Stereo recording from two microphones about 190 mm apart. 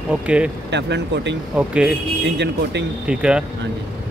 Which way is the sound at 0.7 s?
65° right (ahead or behind).